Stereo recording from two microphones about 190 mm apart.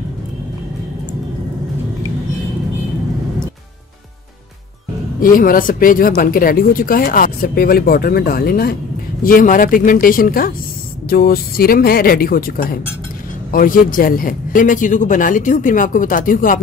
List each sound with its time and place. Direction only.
5.2 s speech: 45° left (ahead or behind)